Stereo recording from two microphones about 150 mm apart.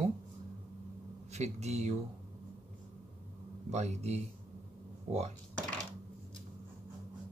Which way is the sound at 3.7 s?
50° right (ahead or behind).